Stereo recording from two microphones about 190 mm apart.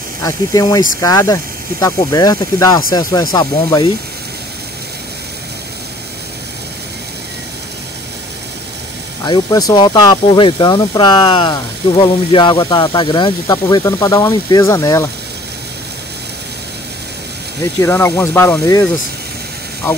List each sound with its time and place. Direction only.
0.2 s speech: 20° left (ahead or behind)
9.2 s speech: 20° left (ahead or behind)
17.7 s speech: 15° left (ahead or behind)